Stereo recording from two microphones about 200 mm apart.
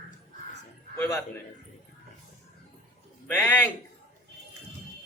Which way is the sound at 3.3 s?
10° left (ahead or behind).